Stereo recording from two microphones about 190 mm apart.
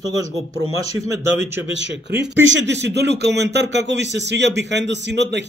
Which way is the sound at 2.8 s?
65° right (ahead or behind).